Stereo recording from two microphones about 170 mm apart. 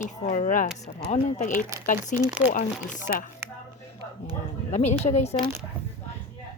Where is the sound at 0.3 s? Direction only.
50° left (ahead or behind).